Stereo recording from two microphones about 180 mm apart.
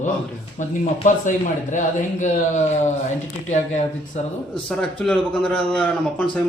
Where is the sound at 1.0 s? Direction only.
45° left (ahead or behind).